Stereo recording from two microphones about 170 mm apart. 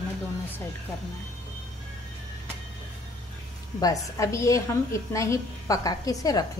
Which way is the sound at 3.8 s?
20° left (ahead or behind).